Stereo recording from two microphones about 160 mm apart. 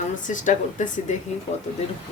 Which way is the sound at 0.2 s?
50° left (ahead or behind).